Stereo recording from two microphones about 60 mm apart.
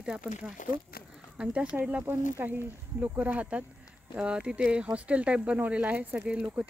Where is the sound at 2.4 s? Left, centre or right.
Right.